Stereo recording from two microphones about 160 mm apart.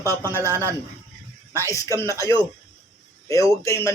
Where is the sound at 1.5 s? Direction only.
20° left (ahead or behind).